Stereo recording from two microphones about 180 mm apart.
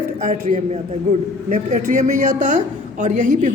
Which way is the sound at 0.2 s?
45° right (ahead or behind).